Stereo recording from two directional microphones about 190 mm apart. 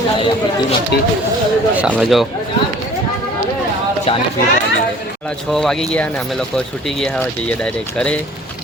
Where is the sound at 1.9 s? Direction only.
Centre (ahead or behind).